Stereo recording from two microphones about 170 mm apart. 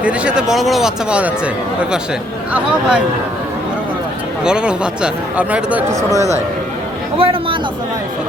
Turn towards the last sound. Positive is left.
turn(degrees=-35)  # may be behind; listen again after turning